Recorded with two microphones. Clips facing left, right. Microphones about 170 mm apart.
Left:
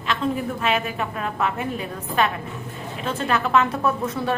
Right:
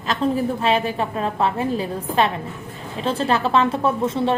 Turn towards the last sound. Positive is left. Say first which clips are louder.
# right 3 dB
turn(degrees=-25)  # may be behind; listen again after turning